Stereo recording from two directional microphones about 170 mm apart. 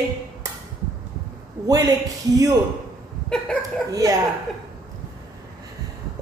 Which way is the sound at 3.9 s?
20° right (ahead or behind).